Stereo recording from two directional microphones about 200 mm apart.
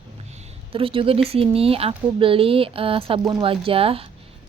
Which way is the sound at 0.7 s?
25° right (ahead or behind).